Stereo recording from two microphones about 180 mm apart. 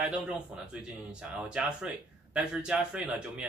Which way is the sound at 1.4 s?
5° right (ahead or behind).